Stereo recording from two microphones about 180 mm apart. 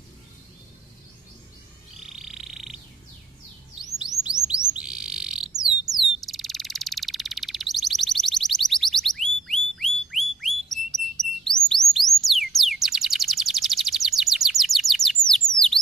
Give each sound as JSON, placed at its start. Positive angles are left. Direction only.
{"t": 2.0, "sound": "frog", "side_deg": 0}
{"t": 4.0, "sound": "music", "side_deg": -5}
{"t": 4.7, "sound": "bird", "side_deg": -5}
{"t": 5.9, "sound": "frog", "side_deg": 0}
{"t": 9.8, "sound": "bird", "side_deg": 0}
{"t": 15.5, "sound": "a sound", "side_deg": -35}